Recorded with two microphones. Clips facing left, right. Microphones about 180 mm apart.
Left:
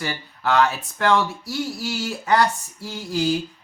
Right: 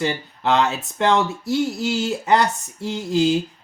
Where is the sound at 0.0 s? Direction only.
20° right (ahead or behind).